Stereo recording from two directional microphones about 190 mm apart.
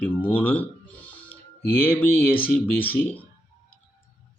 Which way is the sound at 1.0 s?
10° left (ahead or behind).